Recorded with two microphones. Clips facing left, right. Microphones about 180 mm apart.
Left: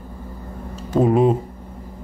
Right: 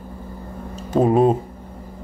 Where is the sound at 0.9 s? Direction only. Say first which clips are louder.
Even; 20° right (ahead or behind).